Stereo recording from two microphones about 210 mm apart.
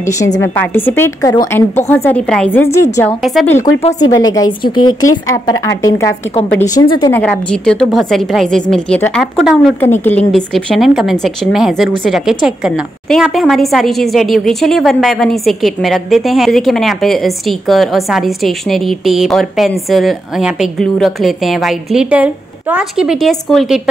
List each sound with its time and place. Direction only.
0.0 s a woman's voice: 15° left (ahead or behind)
3.2 s a woman's voice: centre (ahead or behind)
3.8 s a woman's voice: 20° left (ahead or behind)
7.2 s a woman's voice: 5° left (ahead or behind)